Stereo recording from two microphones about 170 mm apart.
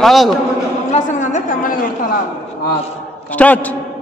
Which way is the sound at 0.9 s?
45° left (ahead or behind).